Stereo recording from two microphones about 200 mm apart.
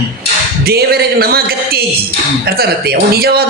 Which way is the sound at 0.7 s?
50° right (ahead or behind).